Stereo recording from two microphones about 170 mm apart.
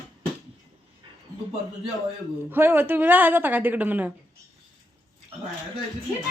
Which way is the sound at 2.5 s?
10° right (ahead or behind).